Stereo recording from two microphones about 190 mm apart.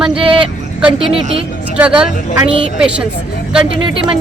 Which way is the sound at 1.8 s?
5° right (ahead or behind).